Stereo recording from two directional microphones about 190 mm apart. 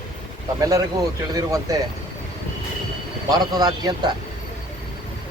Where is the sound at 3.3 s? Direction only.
20° right (ahead or behind).